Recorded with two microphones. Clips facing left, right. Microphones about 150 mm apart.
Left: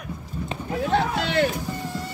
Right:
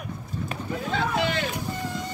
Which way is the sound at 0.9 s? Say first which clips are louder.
Left 3 dB; 65° left (ahead or behind).